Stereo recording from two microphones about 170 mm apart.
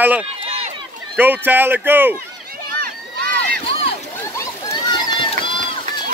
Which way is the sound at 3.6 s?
35° left (ahead or behind).